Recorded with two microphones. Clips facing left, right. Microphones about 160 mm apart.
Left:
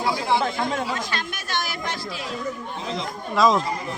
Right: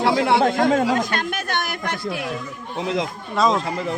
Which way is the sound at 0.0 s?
75° right (ahead or behind).